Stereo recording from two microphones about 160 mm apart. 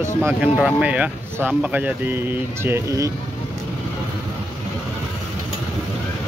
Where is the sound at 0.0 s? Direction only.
15° right (ahead or behind).